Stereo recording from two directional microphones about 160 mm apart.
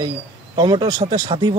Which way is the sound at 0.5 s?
30° right (ahead or behind).